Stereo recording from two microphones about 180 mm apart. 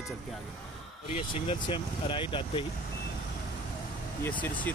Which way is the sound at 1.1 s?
30° left (ahead or behind).